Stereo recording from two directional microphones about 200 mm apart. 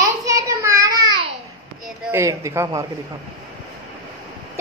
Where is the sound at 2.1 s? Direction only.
15° right (ahead or behind).